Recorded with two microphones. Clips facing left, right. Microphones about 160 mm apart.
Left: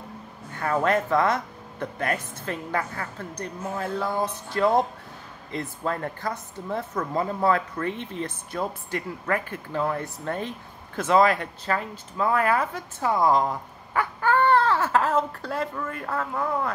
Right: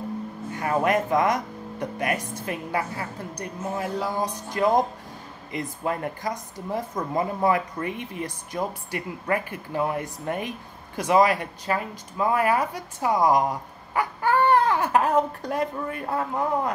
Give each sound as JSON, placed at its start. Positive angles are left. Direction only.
{"t": 0.6, "sound": "a man's voice", "side_deg": -15}